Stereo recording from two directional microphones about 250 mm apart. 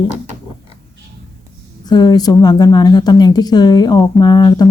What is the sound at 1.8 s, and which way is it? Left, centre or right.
A woman's voice, centre.